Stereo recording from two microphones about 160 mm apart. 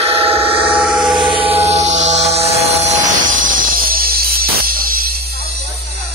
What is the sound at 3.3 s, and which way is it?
Music, 60° right (ahead or behind).